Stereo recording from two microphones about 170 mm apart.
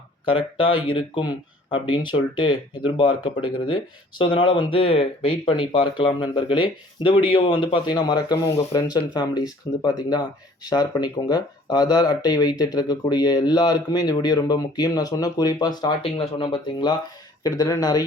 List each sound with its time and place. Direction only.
0.3 s speech: 30° left (ahead or behind)